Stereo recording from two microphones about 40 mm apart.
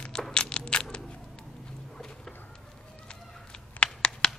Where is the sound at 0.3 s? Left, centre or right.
Left.